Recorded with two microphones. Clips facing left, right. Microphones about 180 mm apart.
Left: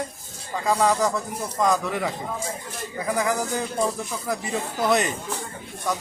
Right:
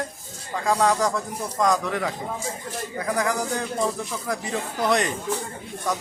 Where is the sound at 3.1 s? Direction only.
Centre (ahead or behind).